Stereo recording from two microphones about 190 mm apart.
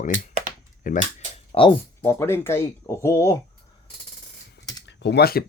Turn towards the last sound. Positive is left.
turn(degrees=55)  # may be behind; listen again after turning